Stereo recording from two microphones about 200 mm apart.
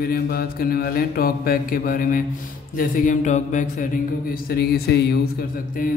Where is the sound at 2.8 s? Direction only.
40° left (ahead or behind).